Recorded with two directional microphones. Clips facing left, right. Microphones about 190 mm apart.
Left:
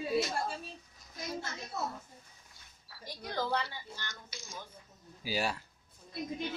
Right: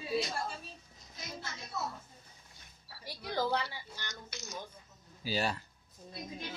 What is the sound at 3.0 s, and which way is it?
Speech, 10° right (ahead or behind).